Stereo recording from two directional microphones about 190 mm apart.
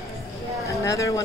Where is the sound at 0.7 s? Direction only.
15° left (ahead or behind).